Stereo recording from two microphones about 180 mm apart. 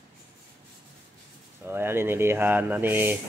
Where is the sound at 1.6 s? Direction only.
10° right (ahead or behind).